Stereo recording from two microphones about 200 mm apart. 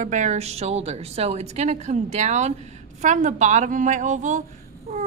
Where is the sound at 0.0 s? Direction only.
35° right (ahead or behind).